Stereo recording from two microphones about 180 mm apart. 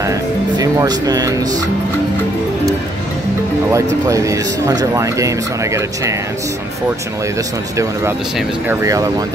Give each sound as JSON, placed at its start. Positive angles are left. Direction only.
{"t": 0.0, "sound": "speech", "side_deg": -20}
{"t": 3.7, "sound": "speech", "side_deg": -15}
{"t": 8.8, "sound": "speech", "side_deg": -20}